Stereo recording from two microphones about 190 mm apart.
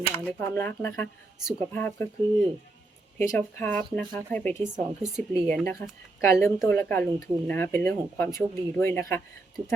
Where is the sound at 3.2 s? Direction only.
10° left (ahead or behind).